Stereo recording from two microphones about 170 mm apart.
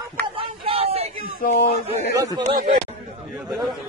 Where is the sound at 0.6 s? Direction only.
35° right (ahead or behind).